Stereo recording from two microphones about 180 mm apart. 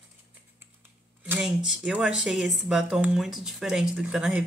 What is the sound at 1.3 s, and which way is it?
Speech, 5° right (ahead or behind).